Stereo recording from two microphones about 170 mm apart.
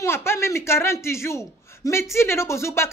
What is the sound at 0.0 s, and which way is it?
Speech, 15° left (ahead or behind).